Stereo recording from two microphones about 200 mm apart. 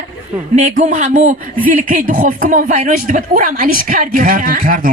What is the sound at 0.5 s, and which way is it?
A woman's voice, 35° right (ahead or behind).